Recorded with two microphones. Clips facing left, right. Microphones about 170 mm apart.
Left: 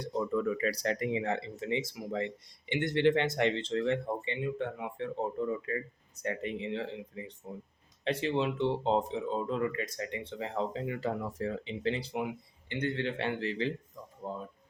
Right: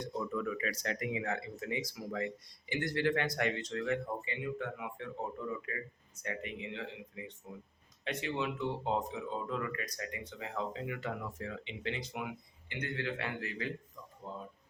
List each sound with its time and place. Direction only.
0.0 s speech: 35° left (ahead or behind)
14.2 s speech: 45° left (ahead or behind)